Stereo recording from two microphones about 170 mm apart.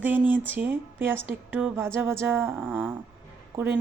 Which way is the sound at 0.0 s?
10° right (ahead or behind).